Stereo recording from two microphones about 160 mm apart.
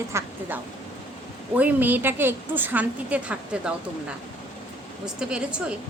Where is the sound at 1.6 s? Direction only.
10° right (ahead or behind).